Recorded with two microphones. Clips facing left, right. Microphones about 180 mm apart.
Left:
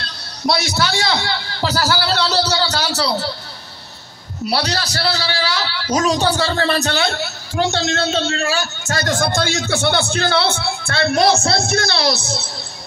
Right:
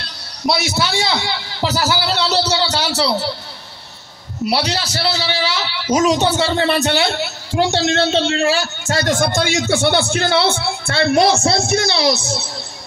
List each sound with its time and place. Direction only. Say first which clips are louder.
0.5 s a man's voice: even; 5° right (ahead or behind)
0.7 s a man's voice: even; 25° right (ahead or behind)
4.5 s a woman's voice: right 1 dB; 25° right (ahead or behind)
10.4 s a woman's voice: right 2 dB; 25° right (ahead or behind)